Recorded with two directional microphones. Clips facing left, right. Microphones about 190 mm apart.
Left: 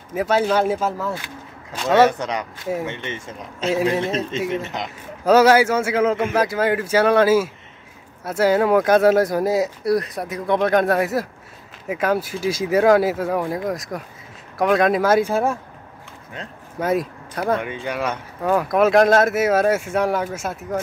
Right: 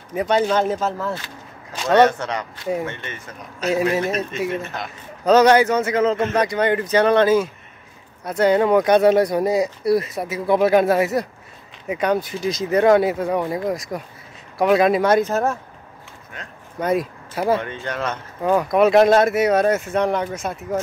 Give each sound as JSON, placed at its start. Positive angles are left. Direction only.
{"t": 0.1, "sound": "speech", "side_deg": 5}
{"t": 2.0, "sound": "speech", "side_deg": 15}
{"t": 2.6, "sound": "speech", "side_deg": 0}
{"t": 2.9, "sound": "a man's voice", "side_deg": 20}
{"t": 5.2, "sound": "speech", "side_deg": 5}
{"t": 16.8, "sound": "speech", "side_deg": 0}
{"t": 17.6, "sound": "speech", "side_deg": 10}